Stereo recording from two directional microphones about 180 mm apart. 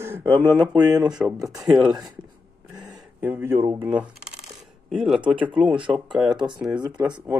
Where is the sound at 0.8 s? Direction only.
5° right (ahead or behind).